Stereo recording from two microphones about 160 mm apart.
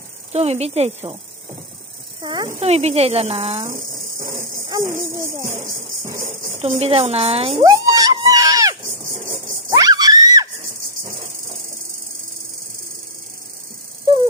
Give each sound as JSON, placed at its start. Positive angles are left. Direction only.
{"t": 0.3, "sound": "a woman's voice", "side_deg": -40}
{"t": 2.2, "sound": "a woman's voice", "side_deg": -25}
{"t": 2.6, "sound": "a woman's voice", "side_deg": -40}
{"t": 4.2, "sound": "insect", "side_deg": -20}
{"t": 5.2, "sound": "music", "side_deg": -20}
{"t": 6.6, "sound": "a woman's voice", "side_deg": -40}
{"t": 7.6, "sound": "a sound", "side_deg": -25}
{"t": 9.6, "sound": "screaming", "side_deg": -25}